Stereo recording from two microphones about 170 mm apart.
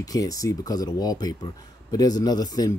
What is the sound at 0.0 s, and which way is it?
Speech, 20° left (ahead or behind).